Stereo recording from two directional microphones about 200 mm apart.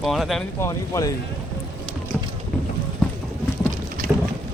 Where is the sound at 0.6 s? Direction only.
15° left (ahead or behind).